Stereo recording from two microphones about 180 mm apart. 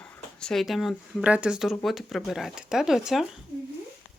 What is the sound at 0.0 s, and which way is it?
Speech, 5° left (ahead or behind).